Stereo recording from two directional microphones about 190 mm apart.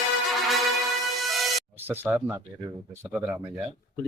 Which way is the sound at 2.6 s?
20° right (ahead or behind).